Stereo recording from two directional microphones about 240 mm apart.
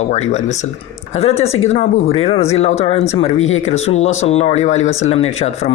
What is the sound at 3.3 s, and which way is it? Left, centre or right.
Speech, left.